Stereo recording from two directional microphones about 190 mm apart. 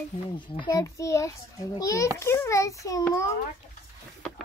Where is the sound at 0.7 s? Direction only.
15° left (ahead or behind).